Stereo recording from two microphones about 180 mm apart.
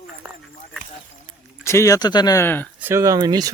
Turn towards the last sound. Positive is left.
turn(degrees=-20)  # may be behind; listen again after turning